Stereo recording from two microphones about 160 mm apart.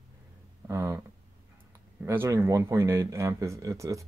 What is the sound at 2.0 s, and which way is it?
Speech, 15° right (ahead or behind).